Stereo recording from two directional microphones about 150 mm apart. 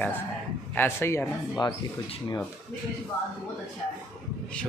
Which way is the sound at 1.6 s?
30° left (ahead or behind).